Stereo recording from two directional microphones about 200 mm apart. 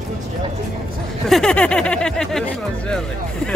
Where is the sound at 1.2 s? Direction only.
Centre (ahead or behind).